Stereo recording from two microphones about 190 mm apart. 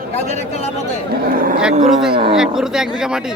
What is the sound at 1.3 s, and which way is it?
Speech, 50° right (ahead or behind).